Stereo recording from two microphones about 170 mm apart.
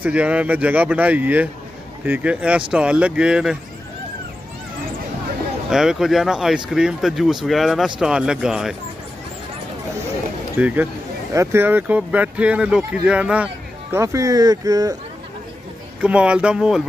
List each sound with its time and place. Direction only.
0.0 s speech: 5° right (ahead or behind)
5.7 s speech: centre (ahead or behind)
10.6 s speech: 10° right (ahead or behind)
13.9 s speech: 20° right (ahead or behind)
16.0 s speech: 5° right (ahead or behind)